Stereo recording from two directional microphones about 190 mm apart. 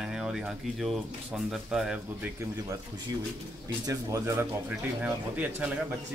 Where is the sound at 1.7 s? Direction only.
5° right (ahead or behind).